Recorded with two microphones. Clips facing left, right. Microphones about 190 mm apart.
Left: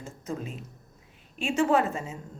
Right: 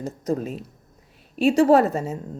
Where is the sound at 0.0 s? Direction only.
40° right (ahead or behind).